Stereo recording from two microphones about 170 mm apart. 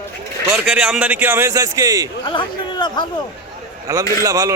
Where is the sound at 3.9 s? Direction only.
20° right (ahead or behind).